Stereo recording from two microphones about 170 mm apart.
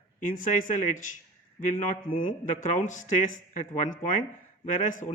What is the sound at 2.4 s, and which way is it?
A man's voice, 45° left (ahead or behind).